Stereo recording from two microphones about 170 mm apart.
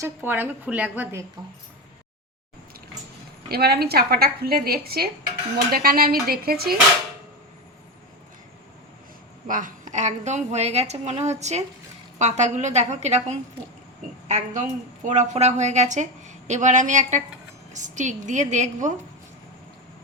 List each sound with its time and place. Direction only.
0.0 s a woman's voice: 10° right (ahead or behind)
3.5 s a woman's voice: 65° right (ahead or behind)
9.5 s a woman's voice: 50° right (ahead or behind)